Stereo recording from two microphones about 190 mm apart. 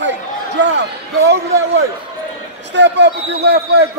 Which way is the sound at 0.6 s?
70° right (ahead or behind).